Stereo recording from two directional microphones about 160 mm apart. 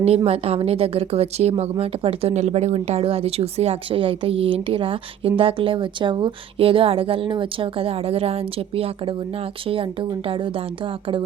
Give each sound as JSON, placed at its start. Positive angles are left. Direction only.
{"t": 0.3, "sound": "a woman's voice", "side_deg": -40}